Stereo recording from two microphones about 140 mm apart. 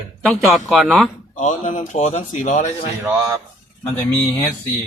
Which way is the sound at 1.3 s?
65° left (ahead or behind).